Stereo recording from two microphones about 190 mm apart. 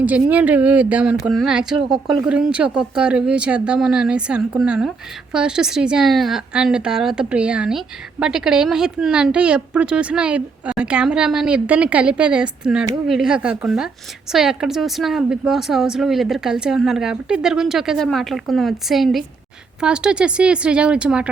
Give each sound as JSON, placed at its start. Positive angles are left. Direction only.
{"t": 0.0, "sound": "a woman's voice", "side_deg": -10}